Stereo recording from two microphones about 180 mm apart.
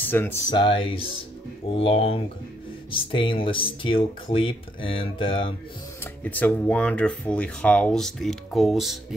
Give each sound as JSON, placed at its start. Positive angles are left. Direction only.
{"t": 0.0, "sound": "speech", "side_deg": 10}
{"t": 0.5, "sound": "speech", "side_deg": 30}
{"t": 6.2, "sound": "speech", "side_deg": 10}